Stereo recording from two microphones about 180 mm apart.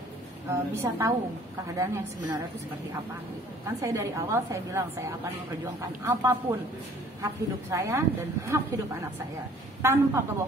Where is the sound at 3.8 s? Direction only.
15° right (ahead or behind).